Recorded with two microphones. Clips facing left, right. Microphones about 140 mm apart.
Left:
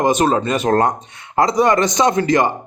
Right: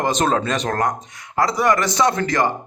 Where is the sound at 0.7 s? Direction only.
25° left (ahead or behind).